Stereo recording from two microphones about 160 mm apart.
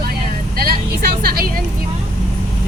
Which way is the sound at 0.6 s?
75° right (ahead or behind).